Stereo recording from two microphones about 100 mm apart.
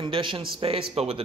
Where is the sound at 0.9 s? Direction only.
90° right.